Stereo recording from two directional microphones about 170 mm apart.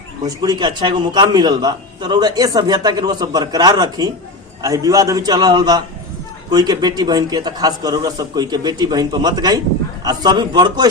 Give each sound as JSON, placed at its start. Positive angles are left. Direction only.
{"t": 0.3, "sound": "a man's voice", "side_deg": -25}